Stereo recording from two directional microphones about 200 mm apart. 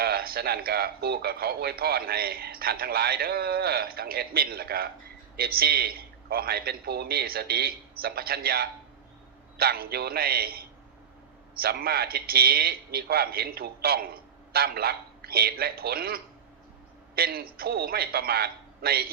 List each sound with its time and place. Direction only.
0.0 s speech: 50° right (ahead or behind)